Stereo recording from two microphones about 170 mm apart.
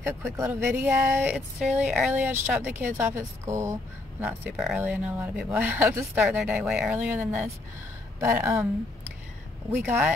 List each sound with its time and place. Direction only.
0.0 s speech: 15° right (ahead or behind)
9.7 s speech: 10° right (ahead or behind)